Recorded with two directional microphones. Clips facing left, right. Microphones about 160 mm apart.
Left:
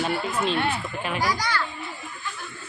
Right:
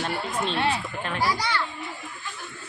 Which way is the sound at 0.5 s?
30° right (ahead or behind).